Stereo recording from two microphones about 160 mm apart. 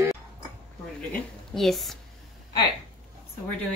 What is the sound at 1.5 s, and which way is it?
Speech, centre (ahead or behind).